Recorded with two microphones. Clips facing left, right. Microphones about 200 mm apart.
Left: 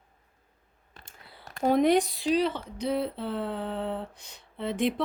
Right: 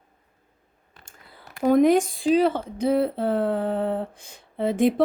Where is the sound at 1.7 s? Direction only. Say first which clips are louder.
Right 5 dB; 50° right (ahead or behind).